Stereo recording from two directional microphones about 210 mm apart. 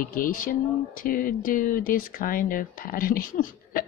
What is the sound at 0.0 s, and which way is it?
Speech, 40° left (ahead or behind).